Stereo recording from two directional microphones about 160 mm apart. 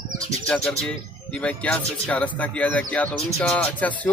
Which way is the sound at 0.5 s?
5° left (ahead or behind).